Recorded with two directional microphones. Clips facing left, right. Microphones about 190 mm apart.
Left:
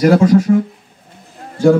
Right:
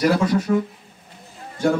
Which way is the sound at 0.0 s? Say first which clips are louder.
Left 8 dB; 45° left (ahead or behind).